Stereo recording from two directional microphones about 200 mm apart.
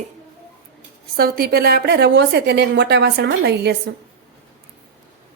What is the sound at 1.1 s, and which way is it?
A woman's voice, 50° right (ahead or behind).